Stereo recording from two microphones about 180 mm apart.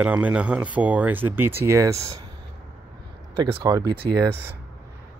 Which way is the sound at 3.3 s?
30° right (ahead or behind).